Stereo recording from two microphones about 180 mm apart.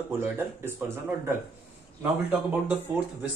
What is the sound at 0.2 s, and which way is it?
A man's voice, 10° right (ahead or behind).